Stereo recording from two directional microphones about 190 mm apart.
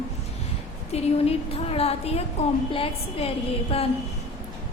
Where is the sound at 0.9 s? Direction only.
30° left (ahead or behind).